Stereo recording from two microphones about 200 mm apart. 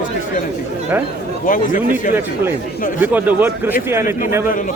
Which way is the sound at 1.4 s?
40° left (ahead or behind).